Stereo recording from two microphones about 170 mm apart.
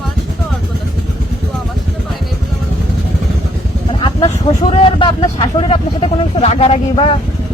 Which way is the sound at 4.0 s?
30° left (ahead or behind).